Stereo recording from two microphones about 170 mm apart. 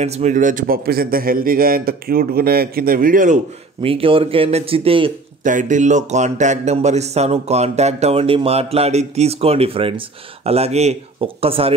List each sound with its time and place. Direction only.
0.0 s a man's voice: 40° right (ahead or behind)
3.8 s speech: 30° right (ahead or behind)
5.4 s speech: 50° right (ahead or behind)